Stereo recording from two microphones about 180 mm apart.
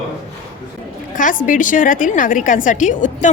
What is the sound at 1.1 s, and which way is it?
A woman's voice, 45° left (ahead or behind).